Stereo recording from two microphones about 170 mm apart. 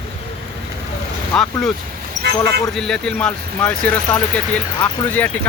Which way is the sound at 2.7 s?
5° left (ahead or behind).